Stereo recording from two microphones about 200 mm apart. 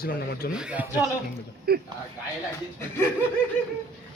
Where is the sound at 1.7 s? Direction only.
50° right (ahead or behind).